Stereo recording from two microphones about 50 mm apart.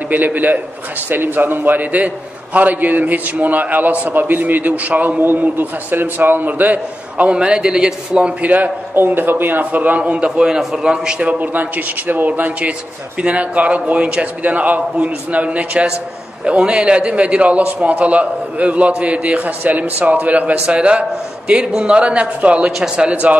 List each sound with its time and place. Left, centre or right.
0.1 s a man's voice: right
8.9 s a man's voice: right; by 11.2 s centre
11.2 s a man's voice: right